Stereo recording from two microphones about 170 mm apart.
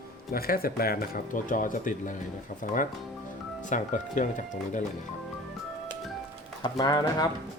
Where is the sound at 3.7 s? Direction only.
50° left (ahead or behind).